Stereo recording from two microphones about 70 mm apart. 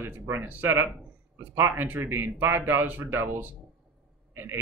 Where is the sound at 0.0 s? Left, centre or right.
Right.